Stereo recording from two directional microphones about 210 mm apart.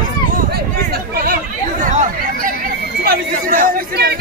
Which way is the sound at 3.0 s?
40° right (ahead or behind).